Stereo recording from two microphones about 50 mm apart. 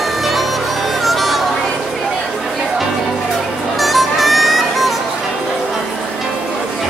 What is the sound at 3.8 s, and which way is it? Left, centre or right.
Music, centre.